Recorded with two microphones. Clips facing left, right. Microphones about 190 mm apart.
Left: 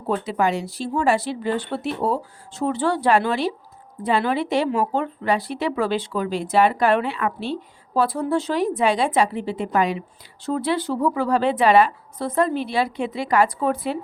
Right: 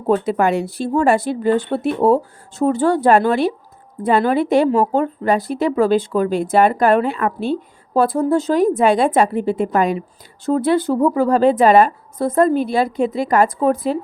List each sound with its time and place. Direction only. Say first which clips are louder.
0.1 s speech: right 6 dB; 55° right (ahead or behind)